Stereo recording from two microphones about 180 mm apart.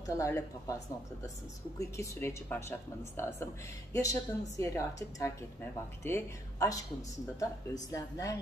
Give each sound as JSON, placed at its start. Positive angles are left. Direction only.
{"t": 0.0, "sound": "a woman's voice", "side_deg": 20}
{"t": 1.8, "sound": "a woman's voice", "side_deg": 15}